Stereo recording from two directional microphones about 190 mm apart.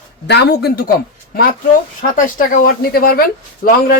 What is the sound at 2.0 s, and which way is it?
Speech, 45° left (ahead or behind).